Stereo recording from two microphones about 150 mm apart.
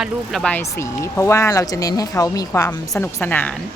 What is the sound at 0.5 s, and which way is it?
A woman's voice, 15° left (ahead or behind).